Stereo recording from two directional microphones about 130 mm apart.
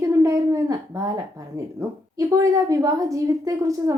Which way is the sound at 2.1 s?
25° right (ahead or behind).